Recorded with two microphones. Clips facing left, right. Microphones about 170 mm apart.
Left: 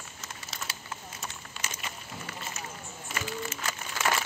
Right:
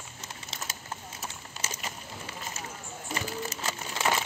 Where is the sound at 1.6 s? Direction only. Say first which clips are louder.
Right 2 dB; 25° right (ahead or behind).